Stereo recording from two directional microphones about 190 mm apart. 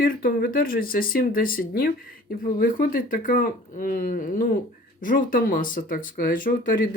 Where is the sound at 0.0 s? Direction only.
50° left (ahead or behind).